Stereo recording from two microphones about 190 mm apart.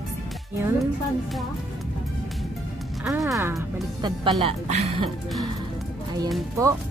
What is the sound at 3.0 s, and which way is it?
Speech, centre (ahead or behind).